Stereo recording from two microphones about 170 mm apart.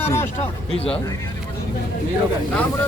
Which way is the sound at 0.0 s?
15° left (ahead or behind).